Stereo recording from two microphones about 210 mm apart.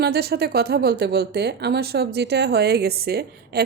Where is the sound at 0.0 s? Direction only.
50° right (ahead or behind).